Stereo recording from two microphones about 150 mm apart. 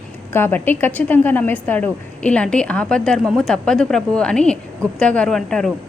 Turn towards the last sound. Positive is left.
turn(degrees=5)  # may be behind; listen again after turning